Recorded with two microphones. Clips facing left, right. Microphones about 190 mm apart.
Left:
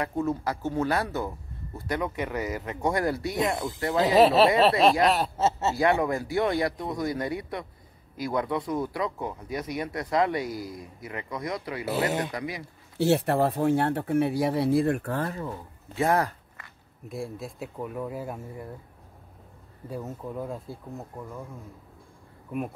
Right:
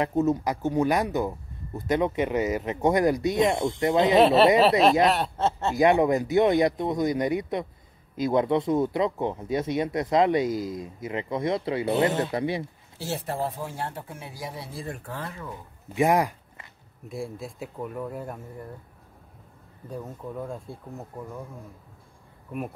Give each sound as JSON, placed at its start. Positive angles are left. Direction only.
{"t": 0.0, "sound": "speech", "side_deg": -20}
{"t": 4.2, "sound": "speech", "side_deg": 0}
{"t": 5.8, "sound": "speech", "side_deg": -20}
{"t": 12.9, "sound": "speech", "side_deg": 65}
{"t": 15.5, "sound": "speech", "side_deg": -15}
{"t": 17.1, "sound": "speech", "side_deg": 0}
{"t": 19.9, "sound": "speech", "side_deg": 5}